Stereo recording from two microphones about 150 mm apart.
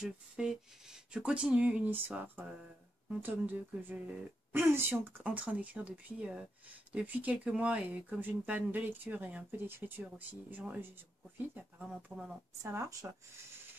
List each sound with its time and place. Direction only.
0.0 s speech: 5° right (ahead or behind)
12.1 s speech: 20° right (ahead or behind)